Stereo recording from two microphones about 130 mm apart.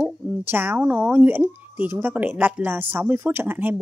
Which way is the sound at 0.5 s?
15° right (ahead or behind).